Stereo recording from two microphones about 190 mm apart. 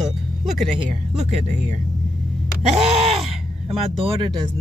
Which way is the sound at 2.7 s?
35° right (ahead or behind).